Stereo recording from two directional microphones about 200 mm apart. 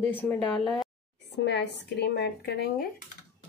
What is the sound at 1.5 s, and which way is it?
Speech, 60° left (ahead or behind).